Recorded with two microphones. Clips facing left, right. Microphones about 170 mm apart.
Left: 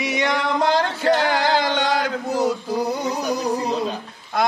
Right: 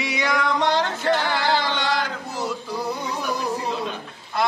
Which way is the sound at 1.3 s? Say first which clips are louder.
Left 3 dB; 45° left (ahead or behind).